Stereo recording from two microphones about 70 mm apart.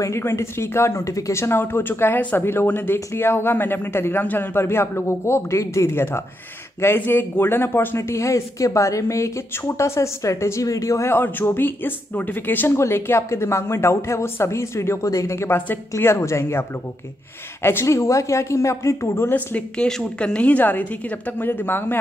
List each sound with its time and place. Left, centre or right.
0.0 s speech: left
11.1 s speech: left
12.7 s speech: left
17.6 s speech: left
19.8 s a woman's voice: centre; by 21.9 s left